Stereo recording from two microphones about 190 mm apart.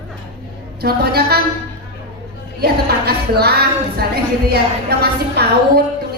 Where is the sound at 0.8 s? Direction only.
55° right (ahead or behind).